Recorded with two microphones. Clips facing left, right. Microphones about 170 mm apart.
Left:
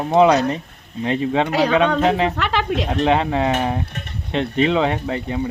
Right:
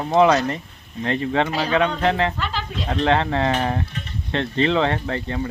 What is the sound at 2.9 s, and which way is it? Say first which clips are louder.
Speech: even; 15° left (ahead or behind).